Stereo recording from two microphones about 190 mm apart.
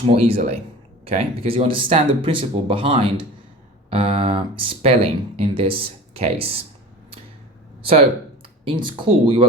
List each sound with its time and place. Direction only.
0.1 s speech: 30° right (ahead or behind)
8.6 s speech: 25° right (ahead or behind)